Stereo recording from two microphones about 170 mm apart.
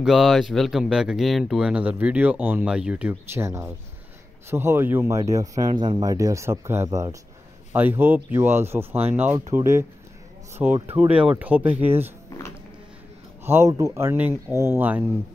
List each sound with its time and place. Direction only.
0.0 s speech: centre (ahead or behind)
13.4 s speech: 15° right (ahead or behind)